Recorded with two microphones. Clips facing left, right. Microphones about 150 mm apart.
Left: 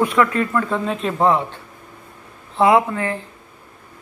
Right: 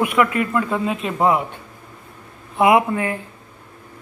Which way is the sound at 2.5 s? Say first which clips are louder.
Even; 15° right (ahead or behind).